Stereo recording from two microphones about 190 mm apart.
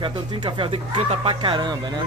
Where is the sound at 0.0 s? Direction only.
25° right (ahead or behind).